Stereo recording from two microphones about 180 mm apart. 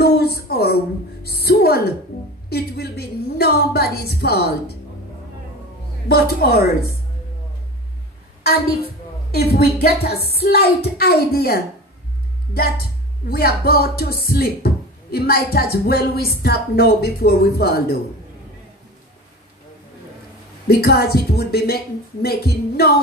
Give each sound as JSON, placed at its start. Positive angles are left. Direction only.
{"t": 0.0, "sound": "a sound", "side_deg": 60}
{"t": 2.5, "sound": "speech", "side_deg": 60}
{"t": 6.0, "sound": "speech", "side_deg": 60}
{"t": 9.3, "sound": "speech", "side_deg": 60}
{"t": 13.3, "sound": "speech", "side_deg": 60}
{"t": 20.6, "sound": "speech", "side_deg": 60}